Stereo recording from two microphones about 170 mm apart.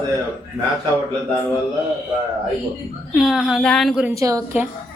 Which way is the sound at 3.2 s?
Centre (ahead or behind).